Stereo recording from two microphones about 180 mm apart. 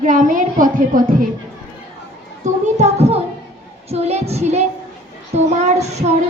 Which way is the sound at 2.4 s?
40° right (ahead or behind).